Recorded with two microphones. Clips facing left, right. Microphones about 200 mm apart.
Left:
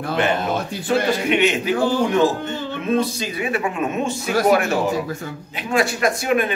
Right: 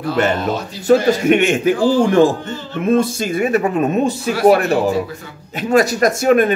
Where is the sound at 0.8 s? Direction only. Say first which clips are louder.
Right 8 dB; 45° right (ahead or behind).